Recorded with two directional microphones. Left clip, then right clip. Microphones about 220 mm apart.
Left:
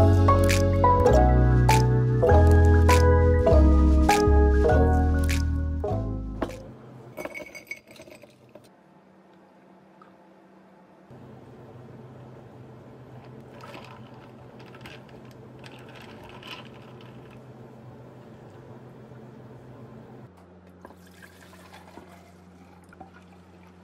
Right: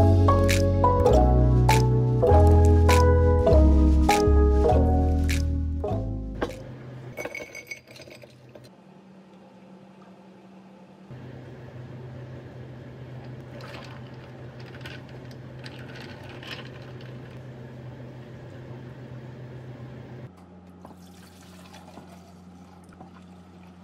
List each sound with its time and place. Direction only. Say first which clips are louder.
0.0 s music: left 1 dB; centre (ahead or behind)
7.2 s glass: right 2 dB; 45° left (ahead or behind)